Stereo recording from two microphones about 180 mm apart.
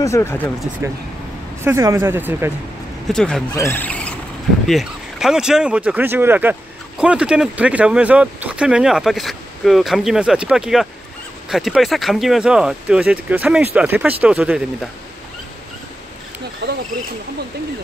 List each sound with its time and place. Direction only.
0.0 s speech: 15° left (ahead or behind)
1.6 s speech: 15° right (ahead or behind)
3.1 s speech: 5° left (ahead or behind)
16.6 s speech: 65° right (ahead or behind)